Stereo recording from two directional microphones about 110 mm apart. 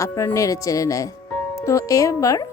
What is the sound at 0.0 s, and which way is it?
A woman's voice, 25° left (ahead or behind).